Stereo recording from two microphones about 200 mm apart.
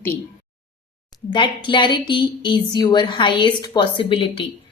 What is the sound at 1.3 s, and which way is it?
Speech, 25° left (ahead or behind).